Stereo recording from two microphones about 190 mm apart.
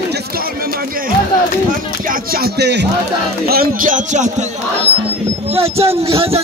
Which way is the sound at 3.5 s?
50° right (ahead or behind).